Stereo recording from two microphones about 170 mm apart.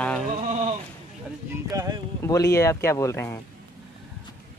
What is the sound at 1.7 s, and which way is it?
Speech, 20° right (ahead or behind).